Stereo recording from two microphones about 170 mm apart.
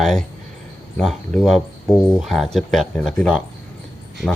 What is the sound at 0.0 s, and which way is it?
Speech, centre (ahead or behind).